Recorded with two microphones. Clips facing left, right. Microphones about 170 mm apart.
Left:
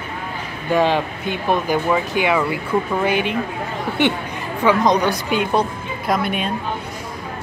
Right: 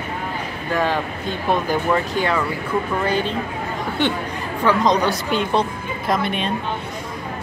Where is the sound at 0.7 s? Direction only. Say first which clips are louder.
Left 4 dB; 15° left (ahead or behind).